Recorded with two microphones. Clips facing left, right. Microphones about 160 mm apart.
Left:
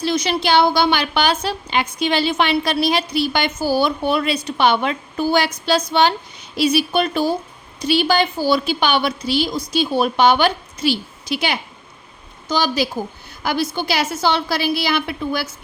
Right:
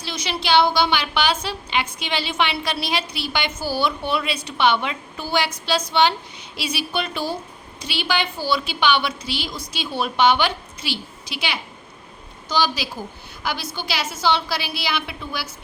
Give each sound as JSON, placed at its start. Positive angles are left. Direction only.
{"t": 0.0, "sound": "a woman's voice", "side_deg": 50}